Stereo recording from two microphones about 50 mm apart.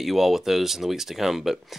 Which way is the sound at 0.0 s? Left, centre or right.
Centre.